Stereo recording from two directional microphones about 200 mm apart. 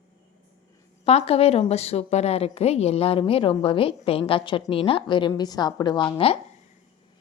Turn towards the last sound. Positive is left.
turn(degrees=25)  # may be behind; listen again after turning